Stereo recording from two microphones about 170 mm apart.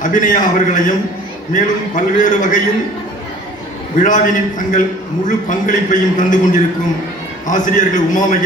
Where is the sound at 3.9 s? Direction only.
50° left (ahead or behind).